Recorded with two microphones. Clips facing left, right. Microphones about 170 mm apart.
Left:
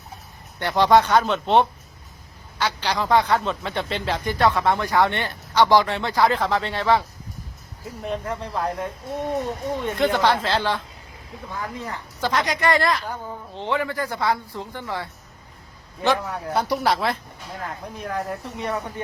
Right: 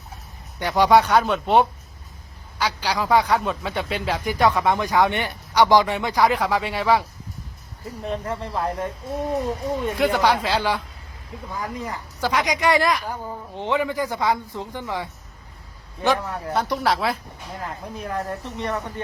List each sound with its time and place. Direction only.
0.6 s a man's voice: 10° right (ahead or behind)
7.9 s a man's voice: centre (ahead or behind); by 15.1 s 15° right (ahead or behind)
16.1 s speech: centre (ahead or behind)